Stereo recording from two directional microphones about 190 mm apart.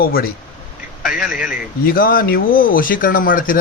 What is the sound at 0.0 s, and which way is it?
Speech, 50° left (ahead or behind).